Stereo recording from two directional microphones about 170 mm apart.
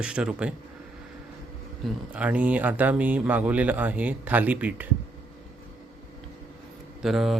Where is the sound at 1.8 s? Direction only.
5° right (ahead or behind).